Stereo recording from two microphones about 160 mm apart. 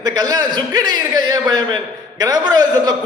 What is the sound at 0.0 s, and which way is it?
A man's voice, 25° right (ahead or behind).